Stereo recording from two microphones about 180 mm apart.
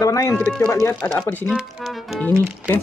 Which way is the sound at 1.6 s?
Centre (ahead or behind).